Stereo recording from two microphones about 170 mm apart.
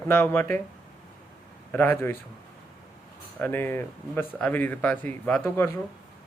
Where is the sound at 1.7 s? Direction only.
10° left (ahead or behind).